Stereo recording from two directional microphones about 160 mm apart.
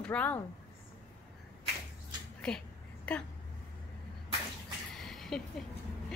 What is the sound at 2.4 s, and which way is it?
Speech, 5° left (ahead or behind).